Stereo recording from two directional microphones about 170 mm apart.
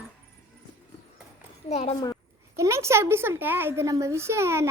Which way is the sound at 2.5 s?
15° right (ahead or behind).